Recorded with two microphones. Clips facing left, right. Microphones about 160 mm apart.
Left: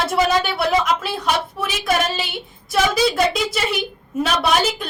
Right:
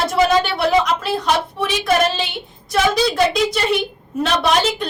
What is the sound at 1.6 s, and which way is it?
A woman's voice, 5° left (ahead or behind).